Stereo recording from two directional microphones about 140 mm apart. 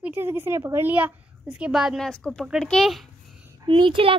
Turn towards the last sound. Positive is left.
turn(degrees=-40)  # may be behind; listen again after turning